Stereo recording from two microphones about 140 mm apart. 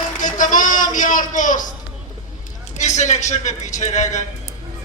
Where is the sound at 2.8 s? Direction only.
55° left (ahead or behind).